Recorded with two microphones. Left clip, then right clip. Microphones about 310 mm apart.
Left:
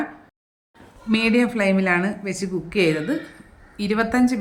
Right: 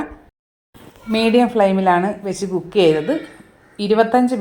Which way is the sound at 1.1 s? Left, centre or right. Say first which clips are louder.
Right 5 dB; centre.